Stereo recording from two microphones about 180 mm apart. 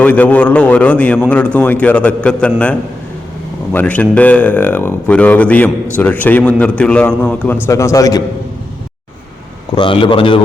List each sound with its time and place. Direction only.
0.0 s speech: 10° left (ahead or behind)
9.7 s a man's voice: 30° left (ahead or behind)